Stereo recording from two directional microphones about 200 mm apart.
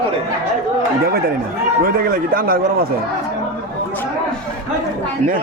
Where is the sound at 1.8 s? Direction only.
45° right (ahead or behind).